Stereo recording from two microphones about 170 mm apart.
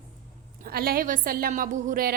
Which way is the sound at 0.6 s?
65° right (ahead or behind).